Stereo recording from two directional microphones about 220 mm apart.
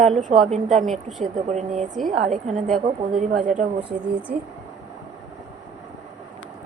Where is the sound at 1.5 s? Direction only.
30° right (ahead or behind).